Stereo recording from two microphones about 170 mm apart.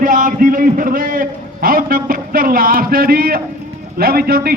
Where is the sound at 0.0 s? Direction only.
50° right (ahead or behind).